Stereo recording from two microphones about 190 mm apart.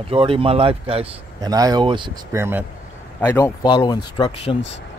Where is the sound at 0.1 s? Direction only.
30° right (ahead or behind).